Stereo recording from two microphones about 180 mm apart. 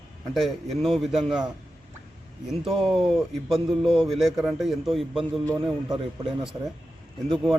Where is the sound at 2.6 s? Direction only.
30° right (ahead or behind).